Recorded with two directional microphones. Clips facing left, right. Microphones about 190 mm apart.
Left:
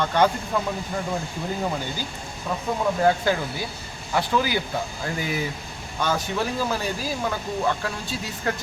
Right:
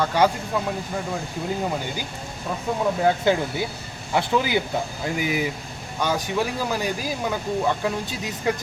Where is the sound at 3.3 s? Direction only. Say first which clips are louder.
Right 3 dB; 20° right (ahead or behind).